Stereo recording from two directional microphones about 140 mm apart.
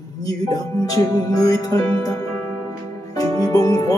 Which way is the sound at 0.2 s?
25° left (ahead or behind).